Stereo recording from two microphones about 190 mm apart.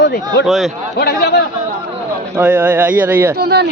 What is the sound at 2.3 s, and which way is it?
Speech, 10° right (ahead or behind).